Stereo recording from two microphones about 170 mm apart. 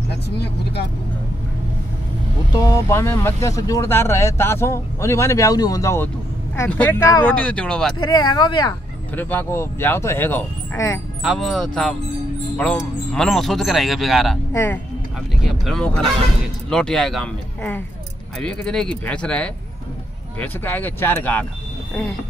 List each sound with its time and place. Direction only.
0.1 s speech: 75° left (ahead or behind)
2.5 s speech: 20° left (ahead or behind)
8.1 s speech: 25° left (ahead or behind)
9.1 s speech: 10° left (ahead or behind)
11.2 s speech: centre (ahead or behind)
14.5 s speech: 10° left (ahead or behind)
15.4 s speech: centre (ahead or behind)